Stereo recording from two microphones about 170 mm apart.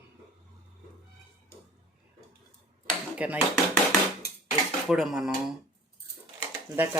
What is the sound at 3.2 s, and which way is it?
Speech, 10° right (ahead or behind).